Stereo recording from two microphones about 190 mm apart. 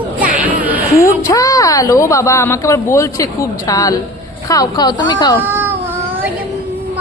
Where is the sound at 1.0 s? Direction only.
15° left (ahead or behind).